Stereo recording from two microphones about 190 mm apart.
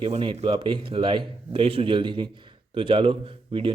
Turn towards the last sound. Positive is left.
turn(degrees=-30)  # may be behind; listen again after turning